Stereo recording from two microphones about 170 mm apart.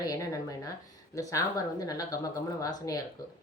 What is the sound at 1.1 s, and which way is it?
Speech, 20° left (ahead or behind).